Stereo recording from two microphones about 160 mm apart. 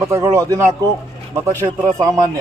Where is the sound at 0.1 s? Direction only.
15° right (ahead or behind).